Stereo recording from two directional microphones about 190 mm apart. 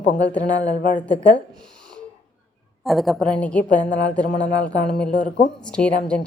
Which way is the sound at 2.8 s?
Centre (ahead or behind).